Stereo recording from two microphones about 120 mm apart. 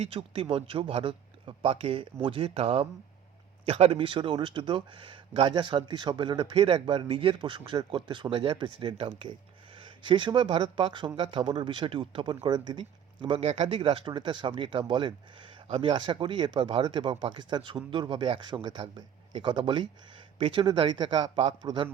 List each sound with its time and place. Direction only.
0.0 s speech: 50° right (ahead or behind)
9.0 s speech: 55° right (ahead or behind)
9.8 s speech: 40° right (ahead or behind)
13.4 s speech: 70° right (ahead or behind)
13.7 s a man's voice: 45° right (ahead or behind)